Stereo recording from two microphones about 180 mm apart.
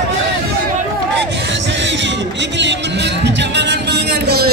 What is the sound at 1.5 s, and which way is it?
Music, 90° right.